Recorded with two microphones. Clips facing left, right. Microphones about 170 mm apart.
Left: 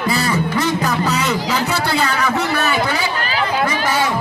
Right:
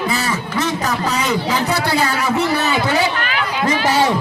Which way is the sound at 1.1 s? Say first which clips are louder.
Even; 10° right (ahead or behind).